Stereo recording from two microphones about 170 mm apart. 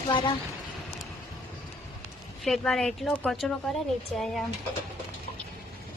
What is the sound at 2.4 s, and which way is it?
A woman's voice, centre (ahead or behind).